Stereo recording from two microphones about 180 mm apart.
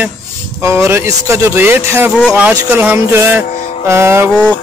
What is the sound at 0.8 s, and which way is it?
Music, 15° right (ahead or behind).